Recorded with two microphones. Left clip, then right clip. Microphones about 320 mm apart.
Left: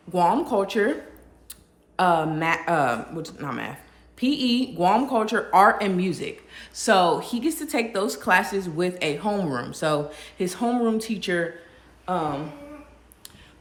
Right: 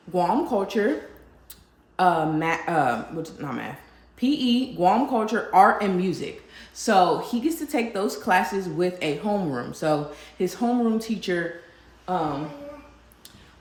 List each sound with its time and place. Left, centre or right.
0.1 s a woman's voice: centre
2.0 s a woman's voice: centre